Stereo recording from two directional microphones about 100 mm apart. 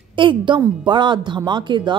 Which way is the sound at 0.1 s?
55° right (ahead or behind).